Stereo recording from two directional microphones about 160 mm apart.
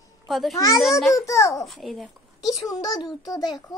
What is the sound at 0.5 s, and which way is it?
A child's voice, 20° left (ahead or behind).